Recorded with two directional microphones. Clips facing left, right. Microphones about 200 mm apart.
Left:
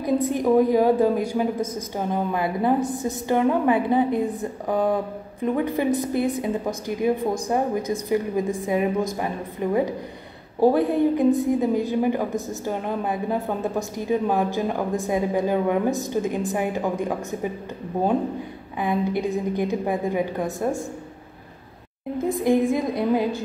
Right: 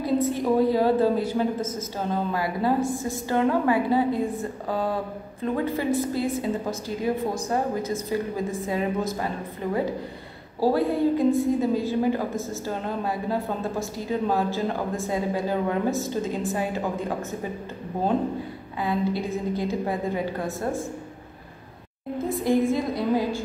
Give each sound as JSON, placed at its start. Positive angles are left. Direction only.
{"t": 0.0, "sound": "a woman's voice", "side_deg": 15}
{"t": 18.8, "sound": "a woman's voice", "side_deg": 20}
{"t": 22.4, "sound": "a woman's voice", "side_deg": 15}